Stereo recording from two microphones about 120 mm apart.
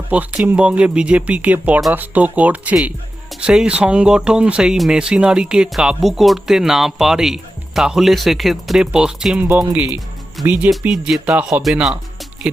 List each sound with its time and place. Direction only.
0.1 s speech: 15° right (ahead or behind)